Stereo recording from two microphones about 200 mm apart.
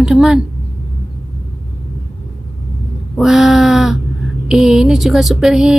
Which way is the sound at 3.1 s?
Centre (ahead or behind).